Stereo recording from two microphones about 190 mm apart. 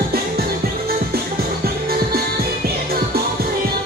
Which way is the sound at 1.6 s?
55° right (ahead or behind).